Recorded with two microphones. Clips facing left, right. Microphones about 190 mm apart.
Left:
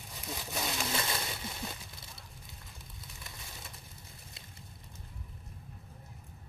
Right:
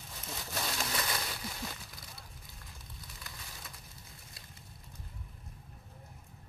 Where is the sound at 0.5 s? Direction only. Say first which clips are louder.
Left 2 dB; 20° left (ahead or behind).